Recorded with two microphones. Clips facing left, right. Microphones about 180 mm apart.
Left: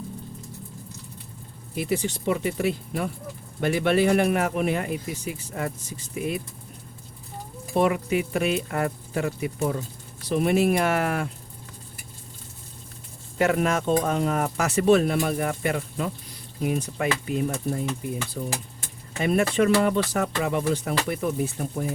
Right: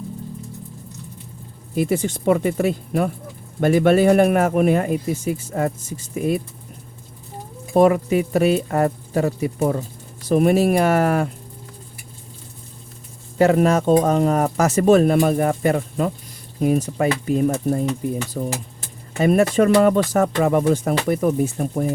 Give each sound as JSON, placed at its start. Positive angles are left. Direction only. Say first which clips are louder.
{"t": 1.7, "sound": "speech", "louder": "right 6 dB", "side_deg": -45}
{"t": 6.1, "sound": "cutlery", "louder": "right 7 dB", "side_deg": -40}
{"t": 7.8, "sound": "cutlery", "louder": "right 7 dB", "side_deg": -40}
{"t": 13.4, "sound": "cutlery", "louder": "right 7 dB", "side_deg": -35}
{"t": 18.4, "sound": "speech", "louder": "right 6 dB", "side_deg": -55}
{"t": 19.2, "sound": "speech", "louder": "right 6 dB", "side_deg": -40}